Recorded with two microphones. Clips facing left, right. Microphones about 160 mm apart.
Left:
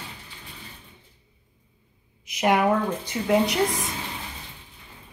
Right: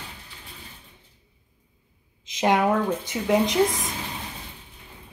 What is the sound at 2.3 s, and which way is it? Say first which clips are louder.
A woman's voice: even; 20° right (ahead or behind).